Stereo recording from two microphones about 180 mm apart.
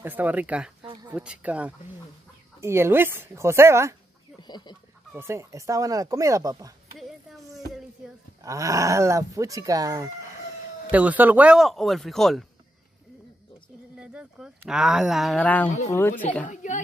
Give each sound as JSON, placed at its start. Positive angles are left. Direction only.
{"t": 0.0, "sound": "speech", "side_deg": -10}
{"t": 4.4, "sound": "duck", "side_deg": 25}
{"t": 5.1, "sound": "speech", "side_deg": -15}
{"t": 8.5, "sound": "speech", "side_deg": -15}
{"t": 10.9, "sound": "speech", "side_deg": -10}
{"t": 13.9, "sound": "a woman's voice", "side_deg": -5}
{"t": 16.4, "sound": "a woman's voice", "side_deg": 45}